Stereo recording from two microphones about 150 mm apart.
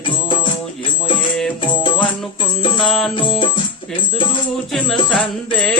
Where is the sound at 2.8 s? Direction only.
Centre (ahead or behind).